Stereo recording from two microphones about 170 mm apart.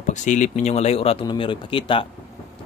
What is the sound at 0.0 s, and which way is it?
Speech, 45° left (ahead or behind).